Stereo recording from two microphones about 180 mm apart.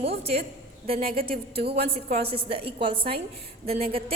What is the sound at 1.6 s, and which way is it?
Speech, 65° right (ahead or behind).